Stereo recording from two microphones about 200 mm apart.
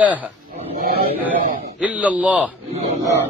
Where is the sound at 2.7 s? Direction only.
30° right (ahead or behind).